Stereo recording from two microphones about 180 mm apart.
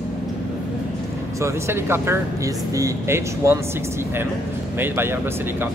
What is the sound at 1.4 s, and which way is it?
Speech, 15° right (ahead or behind).